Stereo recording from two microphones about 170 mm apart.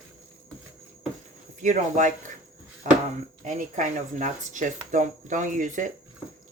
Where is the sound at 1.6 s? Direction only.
50° right (ahead or behind).